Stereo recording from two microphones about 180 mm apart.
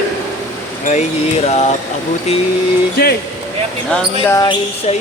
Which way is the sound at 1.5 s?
35° left (ahead or behind).